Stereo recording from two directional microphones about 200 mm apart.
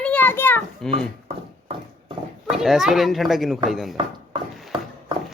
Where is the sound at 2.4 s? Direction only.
Centre (ahead or behind).